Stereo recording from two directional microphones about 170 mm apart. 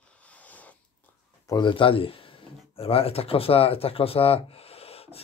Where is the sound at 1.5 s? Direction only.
25° left (ahead or behind).